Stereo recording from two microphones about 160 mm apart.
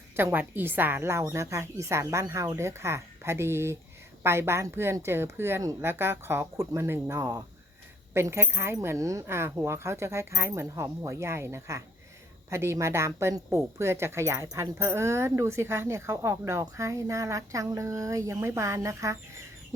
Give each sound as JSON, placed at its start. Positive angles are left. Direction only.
{"t": 0.2, "sound": "a woman's voice", "side_deg": -15}